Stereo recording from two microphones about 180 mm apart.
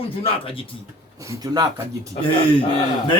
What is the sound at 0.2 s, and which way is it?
Speech, 30° left (ahead or behind).